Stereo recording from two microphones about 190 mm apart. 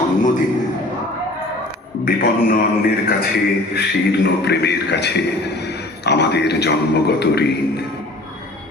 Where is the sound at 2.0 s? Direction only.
50° left (ahead or behind).